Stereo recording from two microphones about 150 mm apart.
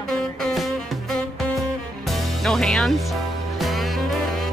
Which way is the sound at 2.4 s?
5° left (ahead or behind).